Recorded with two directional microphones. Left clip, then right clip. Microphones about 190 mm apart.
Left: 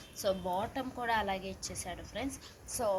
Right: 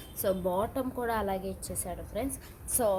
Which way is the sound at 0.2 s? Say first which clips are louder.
Right 4 dB; 35° right (ahead or behind).